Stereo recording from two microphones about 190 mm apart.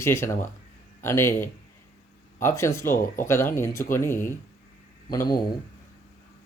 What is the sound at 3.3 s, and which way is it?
Speech, 15° left (ahead or behind).